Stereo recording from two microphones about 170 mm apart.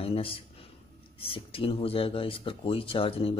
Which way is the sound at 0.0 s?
35° left (ahead or behind).